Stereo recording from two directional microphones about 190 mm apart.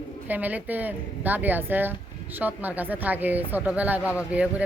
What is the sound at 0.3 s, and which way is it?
Speech, 10° right (ahead or behind).